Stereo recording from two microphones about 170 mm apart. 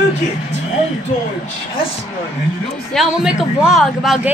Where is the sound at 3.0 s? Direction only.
5° right (ahead or behind).